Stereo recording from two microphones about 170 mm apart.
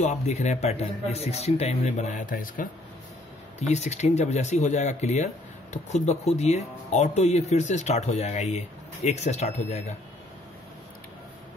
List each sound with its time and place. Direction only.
0.0 s speech: 40° left (ahead or behind)
3.5 s speech: 40° left (ahead or behind)